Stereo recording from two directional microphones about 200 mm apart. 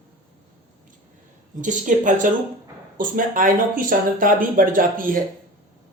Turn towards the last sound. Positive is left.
turn(degrees=-45)  # may be behind; listen again after turning